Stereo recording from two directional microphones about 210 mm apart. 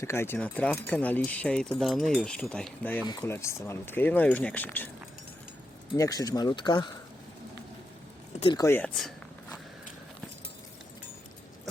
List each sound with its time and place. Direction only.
0.0 s speech: 10° left (ahead or behind)
3.1 s speech: 15° left (ahead or behind)
6.0 s speech: 15° left (ahead or behind)
8.4 s speech: 25° left (ahead or behind)
8.6 s a sound: 10° left (ahead or behind)